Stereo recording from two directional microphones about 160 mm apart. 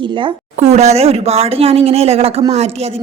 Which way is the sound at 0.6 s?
45° right (ahead or behind).